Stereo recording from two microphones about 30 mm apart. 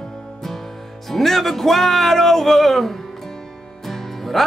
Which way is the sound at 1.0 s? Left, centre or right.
Centre.